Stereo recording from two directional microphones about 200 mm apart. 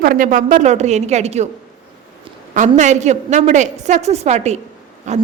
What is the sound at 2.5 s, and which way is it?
A woman's voice, 35° right (ahead or behind).